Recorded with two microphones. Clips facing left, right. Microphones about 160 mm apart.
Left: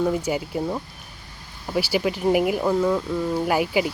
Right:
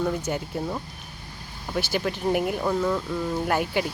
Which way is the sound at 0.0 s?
10° left (ahead or behind).